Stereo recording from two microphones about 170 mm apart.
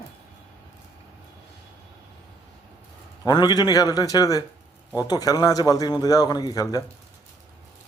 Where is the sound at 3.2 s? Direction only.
25° left (ahead or behind).